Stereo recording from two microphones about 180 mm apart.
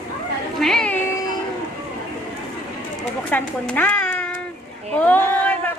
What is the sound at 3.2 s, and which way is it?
A child's voice, 10° left (ahead or behind).